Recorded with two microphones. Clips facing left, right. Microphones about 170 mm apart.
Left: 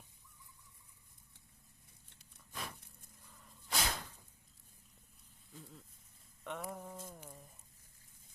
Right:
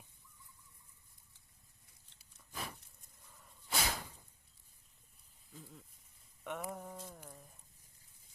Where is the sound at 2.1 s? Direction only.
5° right (ahead or behind).